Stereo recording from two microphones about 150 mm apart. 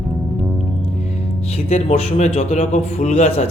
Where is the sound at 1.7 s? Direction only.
50° left (ahead or behind).